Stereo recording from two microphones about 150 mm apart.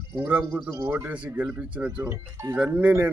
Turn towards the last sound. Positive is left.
turn(degrees=-10)  # may be behind; listen again after turning